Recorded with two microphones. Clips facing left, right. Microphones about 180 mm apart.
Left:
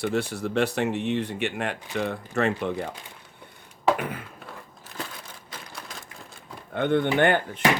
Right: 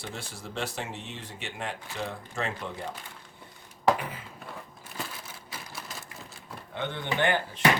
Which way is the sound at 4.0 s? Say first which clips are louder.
Left 6 dB; 60° left (ahead or behind).